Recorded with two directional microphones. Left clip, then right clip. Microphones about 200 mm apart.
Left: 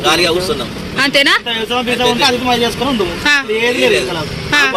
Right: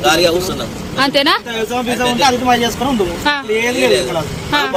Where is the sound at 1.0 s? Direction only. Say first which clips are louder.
Left 2 dB; 10° right (ahead or behind).